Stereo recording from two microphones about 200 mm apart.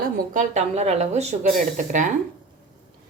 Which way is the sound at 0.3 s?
35° right (ahead or behind).